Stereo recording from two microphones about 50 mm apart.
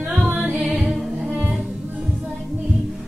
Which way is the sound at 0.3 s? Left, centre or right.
Right.